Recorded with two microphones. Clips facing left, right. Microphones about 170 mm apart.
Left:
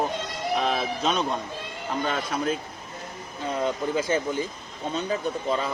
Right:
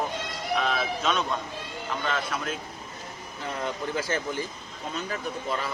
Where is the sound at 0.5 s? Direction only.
35° left (ahead or behind).